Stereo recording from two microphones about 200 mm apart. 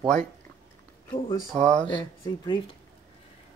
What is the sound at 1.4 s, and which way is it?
Speech, 5° left (ahead or behind).